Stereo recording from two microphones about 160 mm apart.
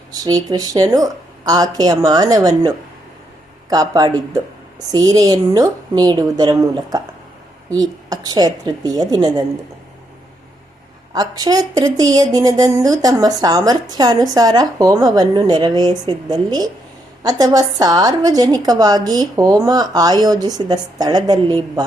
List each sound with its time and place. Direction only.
0.1 s a woman's voice: 25° right (ahead or behind)
11.1 s a woman's voice: 25° right (ahead or behind)